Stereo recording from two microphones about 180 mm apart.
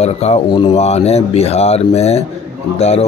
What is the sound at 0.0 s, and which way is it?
Speech, 35° left (ahead or behind).